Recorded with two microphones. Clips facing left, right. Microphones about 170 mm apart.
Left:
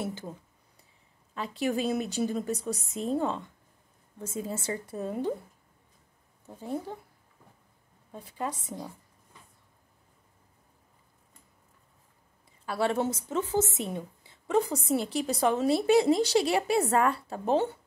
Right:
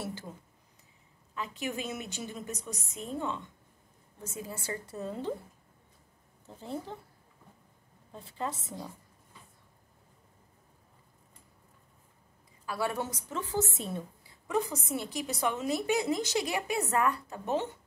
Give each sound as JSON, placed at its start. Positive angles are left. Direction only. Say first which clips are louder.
{"t": 0.0, "sound": "a woman's voice", "louder": "left 4 dB", "side_deg": 20}
{"t": 1.4, "sound": "a woman's voice", "louder": "left 7 dB", "side_deg": 35}
{"t": 6.4, "sound": "speech", "louder": "left 4 dB", "side_deg": 15}
{"t": 12.7, "sound": "a woman's voice", "louder": "left 6 dB", "side_deg": 25}